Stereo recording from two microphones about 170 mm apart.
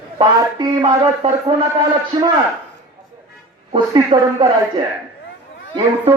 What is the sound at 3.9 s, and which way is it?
Speech, 25° right (ahead or behind).